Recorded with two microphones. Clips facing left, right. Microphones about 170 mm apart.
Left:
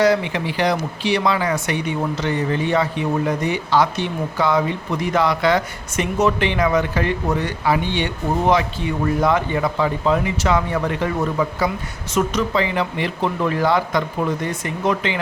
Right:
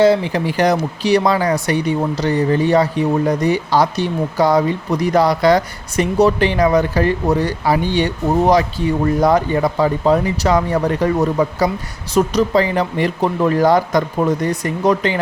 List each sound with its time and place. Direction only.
0.0 s speech: 30° right (ahead or behind)